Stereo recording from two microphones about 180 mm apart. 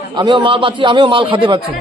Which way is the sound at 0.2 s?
25° right (ahead or behind).